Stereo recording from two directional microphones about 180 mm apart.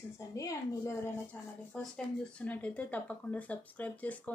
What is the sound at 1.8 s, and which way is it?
Speech, 5° left (ahead or behind).